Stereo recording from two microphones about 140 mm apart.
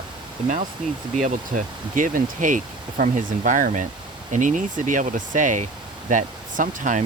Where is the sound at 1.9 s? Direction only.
70° right (ahead or behind).